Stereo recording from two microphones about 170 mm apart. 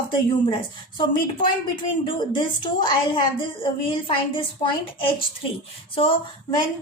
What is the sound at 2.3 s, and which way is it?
A woman's voice, 25° left (ahead or behind).